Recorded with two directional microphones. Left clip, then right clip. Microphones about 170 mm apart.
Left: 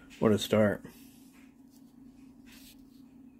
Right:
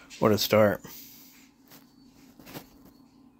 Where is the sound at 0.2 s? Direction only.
15° right (ahead or behind).